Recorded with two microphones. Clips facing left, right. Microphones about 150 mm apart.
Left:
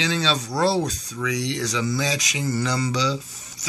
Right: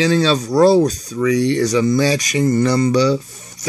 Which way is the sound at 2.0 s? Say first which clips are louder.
Right 9 dB; 70° right (ahead or behind).